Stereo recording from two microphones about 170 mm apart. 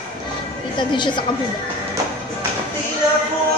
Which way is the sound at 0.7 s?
25° left (ahead or behind).